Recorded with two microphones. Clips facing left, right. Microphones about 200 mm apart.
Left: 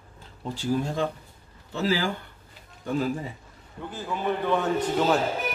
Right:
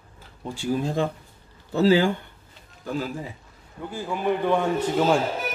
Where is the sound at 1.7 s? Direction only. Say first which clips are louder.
Right 7 dB; 30° right (ahead or behind).